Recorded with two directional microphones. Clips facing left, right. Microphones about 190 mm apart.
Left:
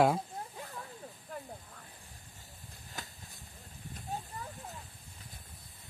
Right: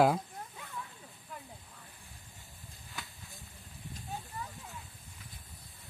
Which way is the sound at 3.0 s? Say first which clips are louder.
Left 1 dB; 40° left (ahead or behind).